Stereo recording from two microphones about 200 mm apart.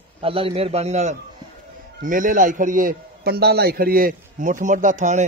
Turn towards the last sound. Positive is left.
turn(degrees=-35)  # may be behind; listen again after turning